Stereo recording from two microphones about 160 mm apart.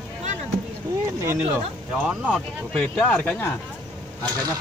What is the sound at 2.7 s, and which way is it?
Speech, 5° left (ahead or behind).